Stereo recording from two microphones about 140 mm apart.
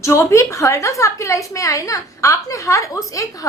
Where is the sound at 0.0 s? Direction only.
20° left (ahead or behind).